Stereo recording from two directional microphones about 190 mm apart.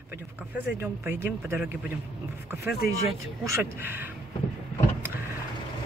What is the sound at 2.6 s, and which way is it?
Speech, 60° left (ahead or behind).